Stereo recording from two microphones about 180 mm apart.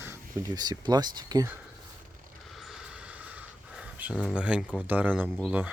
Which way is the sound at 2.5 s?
Centre (ahead or behind).